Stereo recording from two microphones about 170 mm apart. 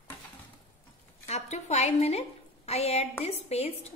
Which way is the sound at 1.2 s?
40° left (ahead or behind).